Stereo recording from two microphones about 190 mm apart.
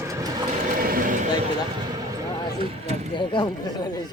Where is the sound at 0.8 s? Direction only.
50° right (ahead or behind).